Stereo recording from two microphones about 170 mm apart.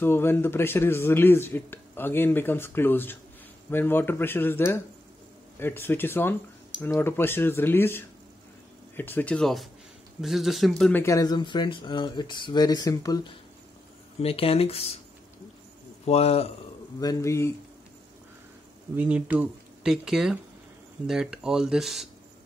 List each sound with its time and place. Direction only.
0.0 s speech: 15° left (ahead or behind); by 15.0 s 35° left (ahead or behind)
16.1 s speech: 35° left (ahead or behind)
17.0 s speech: 20° left (ahead or behind)
18.9 s speech: 10° right (ahead or behind)